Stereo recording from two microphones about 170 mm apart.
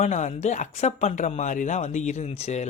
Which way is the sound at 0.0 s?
45° left (ahead or behind).